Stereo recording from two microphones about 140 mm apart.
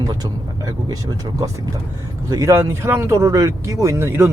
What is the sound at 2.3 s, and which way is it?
Speech, 20° right (ahead or behind).